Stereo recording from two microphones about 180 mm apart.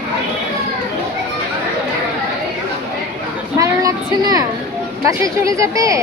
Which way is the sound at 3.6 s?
20° right (ahead or behind).